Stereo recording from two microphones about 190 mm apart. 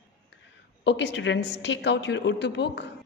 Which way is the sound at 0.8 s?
70° left (ahead or behind).